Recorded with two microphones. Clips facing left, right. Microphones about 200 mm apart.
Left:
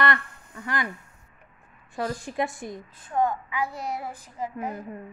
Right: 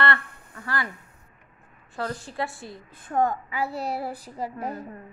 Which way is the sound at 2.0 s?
15° left (ahead or behind).